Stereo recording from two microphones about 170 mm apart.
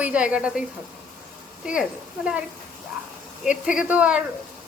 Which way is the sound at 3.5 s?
5° right (ahead or behind).